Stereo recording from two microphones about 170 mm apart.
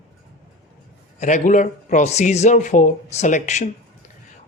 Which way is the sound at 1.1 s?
45° left (ahead or behind).